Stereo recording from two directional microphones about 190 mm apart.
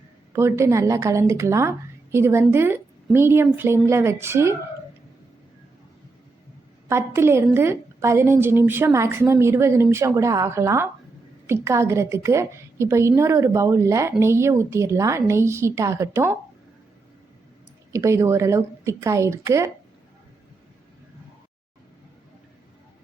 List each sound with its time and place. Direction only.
0.3 s a woman's voice: 15° right (ahead or behind)
6.8 s a woman's voice: 15° right (ahead or behind)
17.9 s a woman's voice: 15° right (ahead or behind)